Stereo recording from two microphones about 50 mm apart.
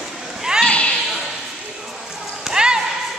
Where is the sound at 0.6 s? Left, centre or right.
Left.